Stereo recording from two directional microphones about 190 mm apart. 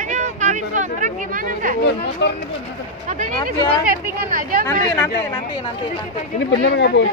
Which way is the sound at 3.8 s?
50° right (ahead or behind).